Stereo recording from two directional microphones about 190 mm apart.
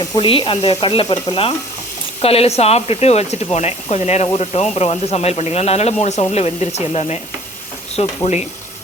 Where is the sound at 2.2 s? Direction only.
30° left (ahead or behind).